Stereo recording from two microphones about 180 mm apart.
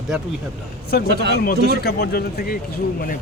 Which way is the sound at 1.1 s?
70° right (ahead or behind).